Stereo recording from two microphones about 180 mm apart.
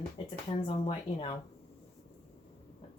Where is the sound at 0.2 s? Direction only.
30° left (ahead or behind).